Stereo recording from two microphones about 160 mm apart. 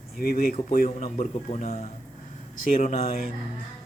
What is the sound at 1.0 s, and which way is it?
Speech, 45° left (ahead or behind).